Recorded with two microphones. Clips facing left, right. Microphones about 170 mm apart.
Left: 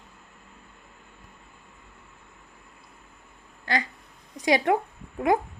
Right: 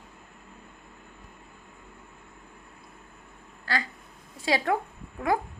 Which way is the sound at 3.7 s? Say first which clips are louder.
Left 3 dB; 20° left (ahead or behind).